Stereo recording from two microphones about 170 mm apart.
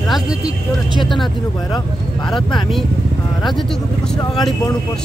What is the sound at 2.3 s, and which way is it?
Speech, 30° left (ahead or behind).